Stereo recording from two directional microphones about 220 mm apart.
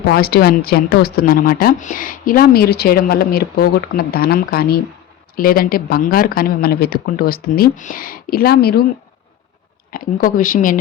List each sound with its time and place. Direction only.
0.0 s speech: 45° left (ahead or behind)
9.9 s speech: 40° left (ahead or behind)